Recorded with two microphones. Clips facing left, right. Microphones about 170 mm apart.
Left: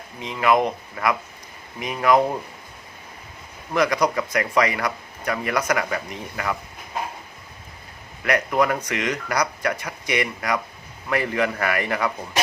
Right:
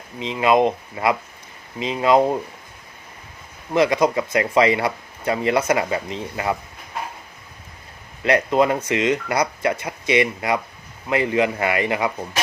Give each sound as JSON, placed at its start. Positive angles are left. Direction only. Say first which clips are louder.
{"t": 0.2, "sound": "speech", "louder": "right 3 dB", "side_deg": -20}
{"t": 3.8, "sound": "speech", "louder": "right 3 dB", "side_deg": -25}
{"t": 8.2, "sound": "speech", "louder": "right 3 dB", "side_deg": -25}